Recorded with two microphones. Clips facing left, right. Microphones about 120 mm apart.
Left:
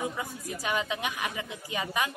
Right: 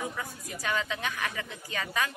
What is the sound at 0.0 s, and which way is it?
A woman's voice, 15° left (ahead or behind).